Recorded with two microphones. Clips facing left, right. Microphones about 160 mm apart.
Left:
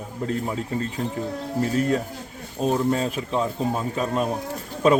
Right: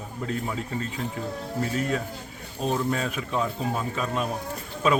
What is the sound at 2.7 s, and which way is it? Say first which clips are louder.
A man's voice: left 4 dB; 30° left (ahead or behind).